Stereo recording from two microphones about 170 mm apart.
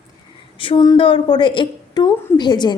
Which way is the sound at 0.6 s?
30° left (ahead or behind).